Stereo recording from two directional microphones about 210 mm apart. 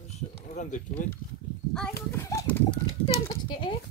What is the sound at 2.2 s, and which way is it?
Speech, 15° left (ahead or behind).